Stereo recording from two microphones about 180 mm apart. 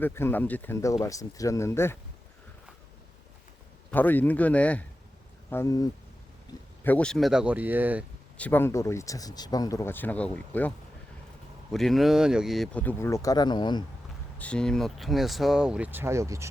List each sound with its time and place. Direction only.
0.0 s speech: 15° left (ahead or behind)
3.9 s speech: 10° left (ahead or behind)
6.8 s speech: 5° left (ahead or behind); by 8.0 s 10° right (ahead or behind)
8.4 s speech: 10° left (ahead or behind)
14.3 s speech: 5° left (ahead or behind); by 16.5 s 15° right (ahead or behind)